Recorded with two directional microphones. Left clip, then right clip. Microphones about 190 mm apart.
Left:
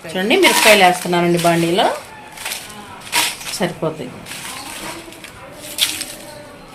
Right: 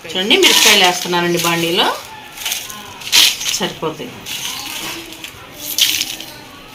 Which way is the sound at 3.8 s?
35° left (ahead or behind).